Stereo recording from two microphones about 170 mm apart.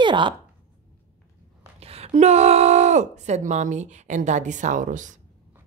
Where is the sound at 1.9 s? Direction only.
40° right (ahead or behind).